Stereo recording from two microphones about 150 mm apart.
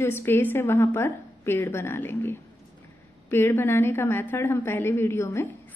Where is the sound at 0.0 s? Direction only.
15° left (ahead or behind).